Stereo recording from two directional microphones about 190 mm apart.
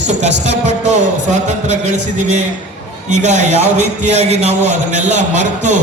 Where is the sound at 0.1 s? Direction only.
35° right (ahead or behind).